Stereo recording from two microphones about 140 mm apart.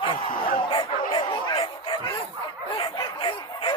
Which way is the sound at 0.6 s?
30° left (ahead or behind).